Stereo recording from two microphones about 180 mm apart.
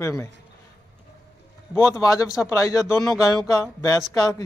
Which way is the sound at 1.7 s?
15° left (ahead or behind).